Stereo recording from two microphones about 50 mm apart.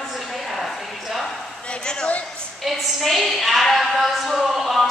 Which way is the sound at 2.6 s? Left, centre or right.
Centre.